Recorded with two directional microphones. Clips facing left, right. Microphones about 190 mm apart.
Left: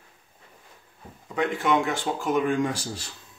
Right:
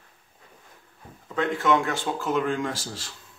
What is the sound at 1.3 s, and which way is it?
Speech, 15° left (ahead or behind).